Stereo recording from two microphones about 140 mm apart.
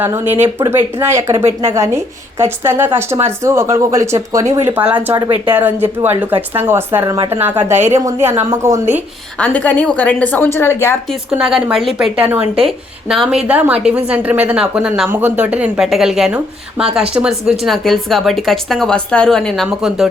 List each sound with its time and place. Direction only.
0.0 s a woman's voice: 15° right (ahead or behind)
9.4 s a woman's voice: 10° left (ahead or behind)
11.1 s a woman's voice: 5° right (ahead or behind)